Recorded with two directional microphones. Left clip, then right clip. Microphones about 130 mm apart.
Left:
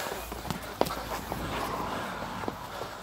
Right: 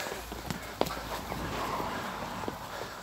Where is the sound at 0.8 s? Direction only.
30° left (ahead or behind).